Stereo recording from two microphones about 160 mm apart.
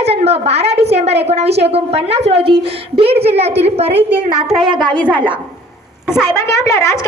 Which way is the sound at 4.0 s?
10° right (ahead or behind).